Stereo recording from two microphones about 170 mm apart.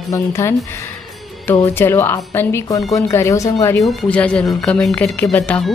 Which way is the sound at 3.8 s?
5° left (ahead or behind).